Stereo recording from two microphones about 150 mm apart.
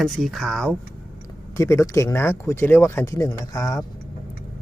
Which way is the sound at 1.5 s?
20° left (ahead or behind).